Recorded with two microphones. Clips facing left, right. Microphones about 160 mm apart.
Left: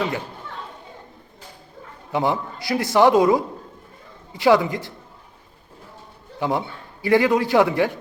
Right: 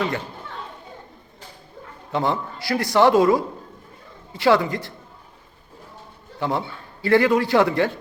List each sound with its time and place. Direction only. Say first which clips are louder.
2.1 s speech: left 1 dB; 15° left (ahead or behind)
6.4 s a man's voice: left 1 dB; 15° left (ahead or behind)